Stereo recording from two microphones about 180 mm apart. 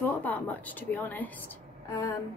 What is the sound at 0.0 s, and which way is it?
A woman's voice, 10° left (ahead or behind).